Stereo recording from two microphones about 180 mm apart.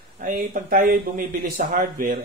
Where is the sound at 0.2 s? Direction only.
50° right (ahead or behind).